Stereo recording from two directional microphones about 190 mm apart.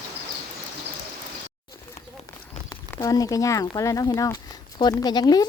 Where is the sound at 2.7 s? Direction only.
15° left (ahead or behind).